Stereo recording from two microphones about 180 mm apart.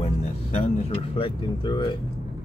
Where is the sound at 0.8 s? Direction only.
30° left (ahead or behind).